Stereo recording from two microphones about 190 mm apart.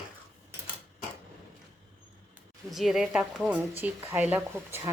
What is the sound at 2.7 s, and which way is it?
Speech, centre (ahead or behind).